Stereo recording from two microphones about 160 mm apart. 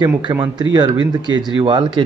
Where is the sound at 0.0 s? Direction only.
25° right (ahead or behind).